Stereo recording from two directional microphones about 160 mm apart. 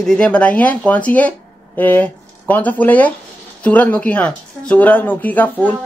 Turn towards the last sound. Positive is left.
turn(degrees=10)  # may be behind; listen again after turning